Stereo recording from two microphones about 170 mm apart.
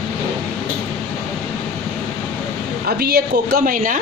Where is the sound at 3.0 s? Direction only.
65° right (ahead or behind).